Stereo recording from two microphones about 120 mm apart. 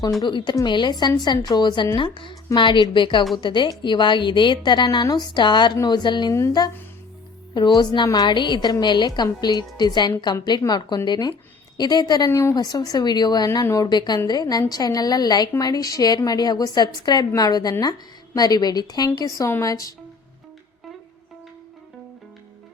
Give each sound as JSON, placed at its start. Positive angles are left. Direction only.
{"t": 0.3, "sound": "a woman's voice", "side_deg": 40}
{"t": 7.5, "sound": "a woman's voice", "side_deg": 40}
{"t": 12.3, "sound": "a woman's voice", "side_deg": 20}
{"t": 12.5, "sound": "a woman's voice", "side_deg": 35}